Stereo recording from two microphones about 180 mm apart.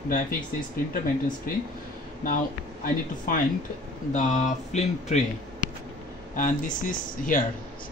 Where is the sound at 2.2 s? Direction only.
45° left (ahead or behind).